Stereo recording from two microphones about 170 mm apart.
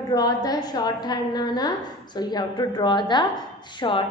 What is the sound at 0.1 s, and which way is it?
A woman's voice, 25° left (ahead or behind).